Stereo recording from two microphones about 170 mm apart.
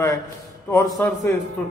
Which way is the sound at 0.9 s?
5° left (ahead or behind).